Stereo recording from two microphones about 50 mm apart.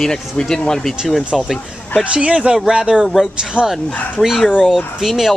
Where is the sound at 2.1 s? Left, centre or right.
Right.